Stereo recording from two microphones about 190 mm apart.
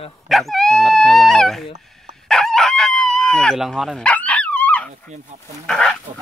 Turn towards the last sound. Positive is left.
turn(degrees=5)  # may be behind; listen again after turning